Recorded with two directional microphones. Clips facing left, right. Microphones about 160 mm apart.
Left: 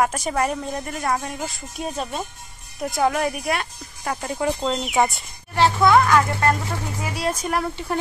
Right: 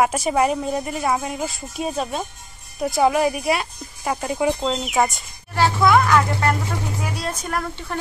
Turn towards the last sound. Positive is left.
turn(degrees=10)  # may be behind; listen again after turning